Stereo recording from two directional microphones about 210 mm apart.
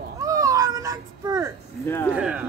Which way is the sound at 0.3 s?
15° right (ahead or behind).